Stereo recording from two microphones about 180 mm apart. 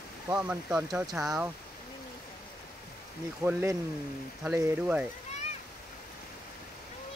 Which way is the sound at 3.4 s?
15° right (ahead or behind).